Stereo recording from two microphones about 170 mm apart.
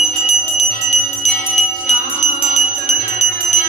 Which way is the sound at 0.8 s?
45° left (ahead or behind).